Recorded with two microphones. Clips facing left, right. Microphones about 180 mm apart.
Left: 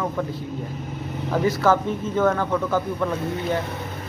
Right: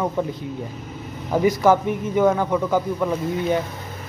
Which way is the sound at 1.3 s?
15° right (ahead or behind).